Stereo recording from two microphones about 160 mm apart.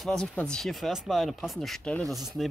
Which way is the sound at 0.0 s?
Centre (ahead or behind).